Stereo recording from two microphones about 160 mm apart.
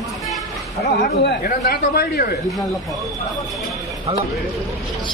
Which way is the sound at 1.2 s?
65° left (ahead or behind).